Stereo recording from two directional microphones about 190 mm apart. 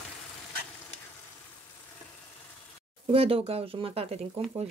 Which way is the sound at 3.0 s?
30° right (ahead or behind).